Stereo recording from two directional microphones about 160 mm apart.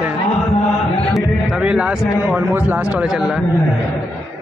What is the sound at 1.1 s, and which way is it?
A man's voice, 5° right (ahead or behind).